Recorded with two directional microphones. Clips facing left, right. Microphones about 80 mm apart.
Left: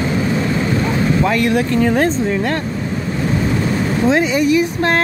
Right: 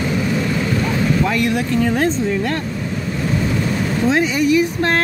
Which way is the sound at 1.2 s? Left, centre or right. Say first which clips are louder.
Left 3 dB; left.